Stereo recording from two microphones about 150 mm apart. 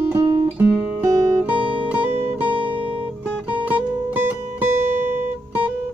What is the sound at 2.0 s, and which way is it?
Music, 15° right (ahead or behind).